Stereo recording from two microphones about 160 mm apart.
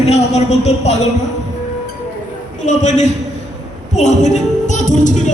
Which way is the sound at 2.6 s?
50° left (ahead or behind).